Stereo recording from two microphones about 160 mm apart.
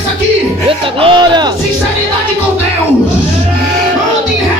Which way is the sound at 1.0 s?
30° right (ahead or behind).